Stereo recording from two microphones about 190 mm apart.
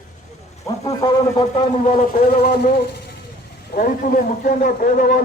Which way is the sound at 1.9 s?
40° left (ahead or behind).